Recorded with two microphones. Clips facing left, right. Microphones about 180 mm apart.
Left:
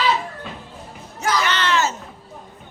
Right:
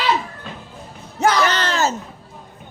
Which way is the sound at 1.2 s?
65° right (ahead or behind).